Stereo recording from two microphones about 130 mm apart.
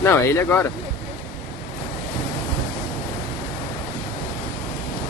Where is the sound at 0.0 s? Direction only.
20° left (ahead or behind).